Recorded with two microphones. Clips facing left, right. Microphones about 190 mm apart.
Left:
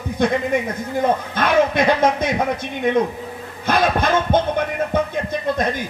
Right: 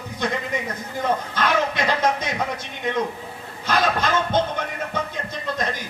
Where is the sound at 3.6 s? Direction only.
55° left (ahead or behind).